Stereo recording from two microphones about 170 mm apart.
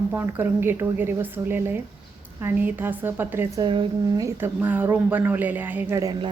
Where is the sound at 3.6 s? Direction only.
25° right (ahead or behind).